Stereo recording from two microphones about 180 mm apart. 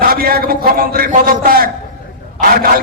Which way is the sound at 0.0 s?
55° right (ahead or behind).